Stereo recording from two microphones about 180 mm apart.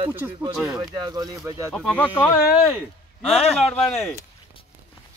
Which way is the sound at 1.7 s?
Centre (ahead or behind).